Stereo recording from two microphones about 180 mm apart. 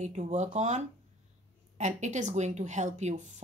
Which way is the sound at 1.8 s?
40° right (ahead or behind).